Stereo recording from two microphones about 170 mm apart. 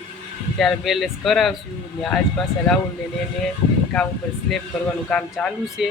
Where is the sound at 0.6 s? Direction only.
Centre (ahead or behind).